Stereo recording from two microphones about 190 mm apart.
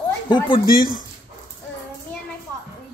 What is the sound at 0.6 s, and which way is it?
Speech, 50° left (ahead or behind).